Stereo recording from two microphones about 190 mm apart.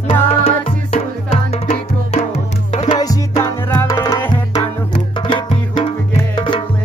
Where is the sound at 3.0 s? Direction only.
20° left (ahead or behind).